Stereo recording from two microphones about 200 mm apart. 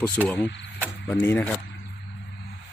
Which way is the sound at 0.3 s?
5° left (ahead or behind).